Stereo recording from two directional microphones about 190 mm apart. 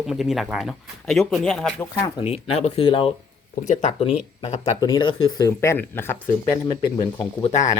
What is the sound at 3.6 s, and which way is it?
Speech, 40° left (ahead or behind).